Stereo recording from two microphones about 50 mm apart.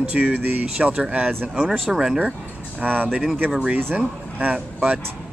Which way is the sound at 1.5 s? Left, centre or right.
Centre.